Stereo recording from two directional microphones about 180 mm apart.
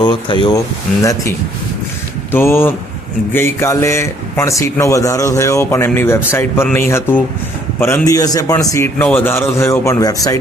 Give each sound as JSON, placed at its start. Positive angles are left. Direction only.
{"t": 0.0, "sound": "speech", "side_deg": 25}
{"t": 2.3, "sound": "a man's voice", "side_deg": 15}